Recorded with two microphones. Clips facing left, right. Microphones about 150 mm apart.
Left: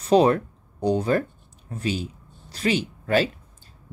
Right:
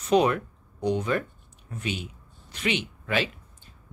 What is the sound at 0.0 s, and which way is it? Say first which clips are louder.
Speech: left 4 dB; 35° left (ahead or behind).